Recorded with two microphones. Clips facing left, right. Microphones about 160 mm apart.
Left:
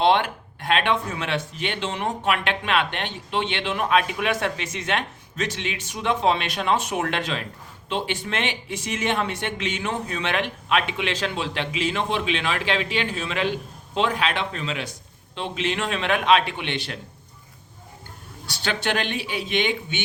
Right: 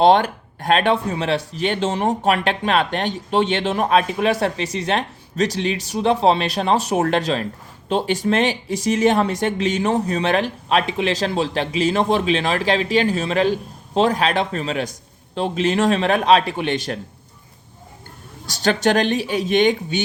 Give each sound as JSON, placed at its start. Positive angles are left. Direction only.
{"t": 0.0, "sound": "speech", "side_deg": -40}
{"t": 18.4, "sound": "speech", "side_deg": -40}